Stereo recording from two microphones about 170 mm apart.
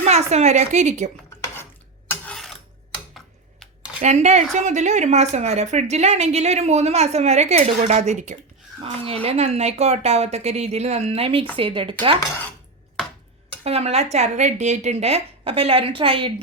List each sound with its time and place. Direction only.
0.0 s a woman's voice: 40° right (ahead or behind)
2.0 s a sound: 5° left (ahead or behind)
4.0 s a woman's voice: 40° right (ahead or behind)
8.8 s a woman's voice: 35° right (ahead or behind)
13.7 s a woman's voice: 40° right (ahead or behind)